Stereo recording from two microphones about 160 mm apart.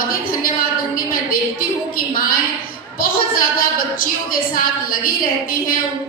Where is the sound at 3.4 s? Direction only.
60° left (ahead or behind).